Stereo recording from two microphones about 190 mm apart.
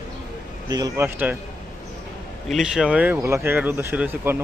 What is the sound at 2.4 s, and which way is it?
Speech, centre (ahead or behind).